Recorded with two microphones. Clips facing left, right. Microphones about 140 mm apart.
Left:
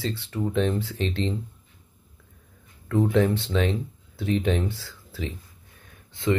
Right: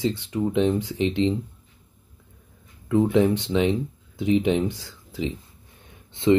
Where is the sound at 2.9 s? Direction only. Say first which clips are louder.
Right 3 dB; 15° right (ahead or behind).